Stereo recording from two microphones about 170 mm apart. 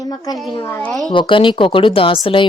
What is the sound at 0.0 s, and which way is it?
A child's voice, 20° left (ahead or behind).